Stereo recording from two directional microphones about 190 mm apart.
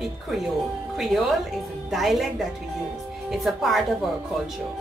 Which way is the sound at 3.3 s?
Centre (ahead or behind).